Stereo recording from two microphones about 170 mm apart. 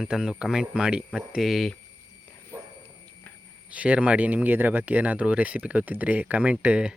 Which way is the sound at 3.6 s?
10° right (ahead or behind).